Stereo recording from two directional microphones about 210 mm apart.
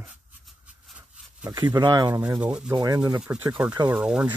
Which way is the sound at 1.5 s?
20° right (ahead or behind).